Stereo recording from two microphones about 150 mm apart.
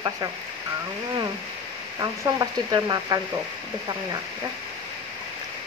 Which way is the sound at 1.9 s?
25° right (ahead or behind).